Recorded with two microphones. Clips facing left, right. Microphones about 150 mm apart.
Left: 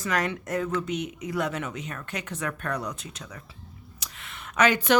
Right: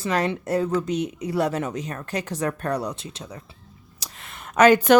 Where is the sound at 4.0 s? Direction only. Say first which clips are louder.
Right 3 dB; 35° right (ahead or behind).